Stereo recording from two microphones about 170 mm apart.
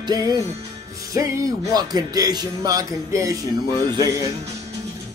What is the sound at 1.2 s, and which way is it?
Music, 20° right (ahead or behind).